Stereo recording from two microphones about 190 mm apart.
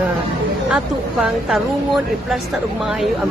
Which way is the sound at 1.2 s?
5° right (ahead or behind).